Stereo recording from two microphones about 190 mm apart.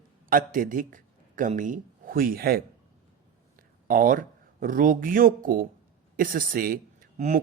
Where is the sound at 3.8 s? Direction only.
45° right (ahead or behind).